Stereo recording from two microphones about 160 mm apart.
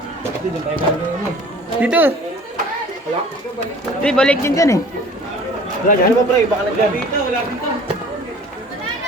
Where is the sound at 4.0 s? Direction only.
5° left (ahead or behind).